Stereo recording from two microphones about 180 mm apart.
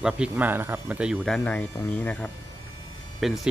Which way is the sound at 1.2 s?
5° left (ahead or behind).